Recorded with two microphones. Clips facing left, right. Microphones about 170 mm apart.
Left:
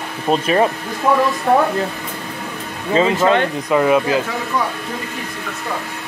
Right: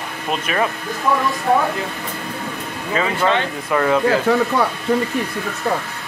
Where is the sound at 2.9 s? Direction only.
25° left (ahead or behind).